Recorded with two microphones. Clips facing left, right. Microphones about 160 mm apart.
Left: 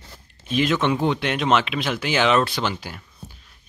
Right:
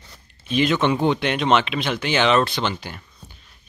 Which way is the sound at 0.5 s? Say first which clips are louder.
Right 1 dB; centre (ahead or behind).